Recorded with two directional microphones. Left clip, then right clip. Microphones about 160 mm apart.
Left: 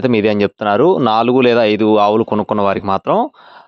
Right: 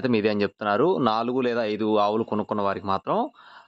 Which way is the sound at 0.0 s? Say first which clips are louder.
Left 9 dB; 45° left (ahead or behind).